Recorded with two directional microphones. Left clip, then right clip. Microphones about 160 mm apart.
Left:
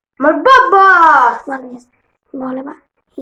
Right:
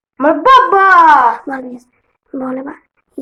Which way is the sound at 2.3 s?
15° right (ahead or behind).